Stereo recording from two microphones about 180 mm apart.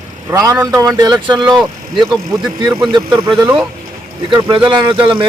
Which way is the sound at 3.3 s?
5° right (ahead or behind).